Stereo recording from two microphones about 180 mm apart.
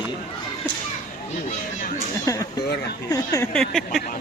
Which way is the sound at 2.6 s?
65° left (ahead or behind).